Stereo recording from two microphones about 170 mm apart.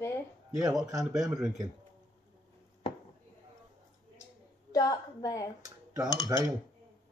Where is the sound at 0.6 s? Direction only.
20° right (ahead or behind).